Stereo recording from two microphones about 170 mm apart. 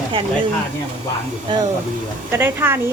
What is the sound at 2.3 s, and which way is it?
Speech, 15° right (ahead or behind).